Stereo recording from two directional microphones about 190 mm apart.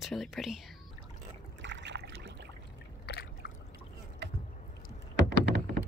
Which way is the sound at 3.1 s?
55° left (ahead or behind).